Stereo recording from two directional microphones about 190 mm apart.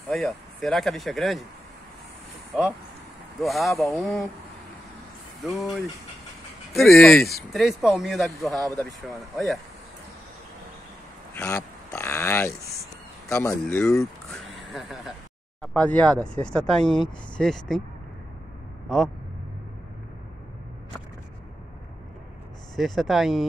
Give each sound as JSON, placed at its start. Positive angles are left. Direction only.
{"t": 0.1, "sound": "speech", "side_deg": 0}
{"t": 3.3, "sound": "speech", "side_deg": 0}
{"t": 5.4, "sound": "speech", "side_deg": 0}
{"t": 11.3, "sound": "a sound", "side_deg": 10}
{"t": 13.3, "sound": "speech", "side_deg": 15}
{"t": 13.8, "sound": "a sound", "side_deg": 0}
{"t": 15.6, "sound": "speech", "side_deg": 5}
{"t": 16.8, "sound": "speech", "side_deg": 25}
{"t": 17.4, "sound": "speech", "side_deg": 0}
{"t": 18.9, "sound": "speech", "side_deg": 0}
{"t": 22.8, "sound": "speech", "side_deg": 0}